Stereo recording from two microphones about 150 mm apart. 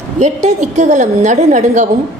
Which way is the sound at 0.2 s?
50° right (ahead or behind).